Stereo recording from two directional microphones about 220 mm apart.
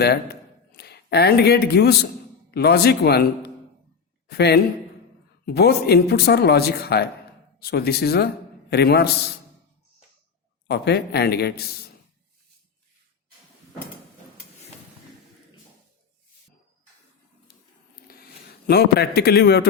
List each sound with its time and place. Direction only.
0.0 s a sound: 45° left (ahead or behind)
2.5 s speech: 45° left (ahead or behind)
4.3 s speech: 45° left (ahead or behind)
10.7 s speech: 45° left (ahead or behind)
18.1 s a sound: 45° left (ahead or behind)
18.7 s speech: 45° left (ahead or behind)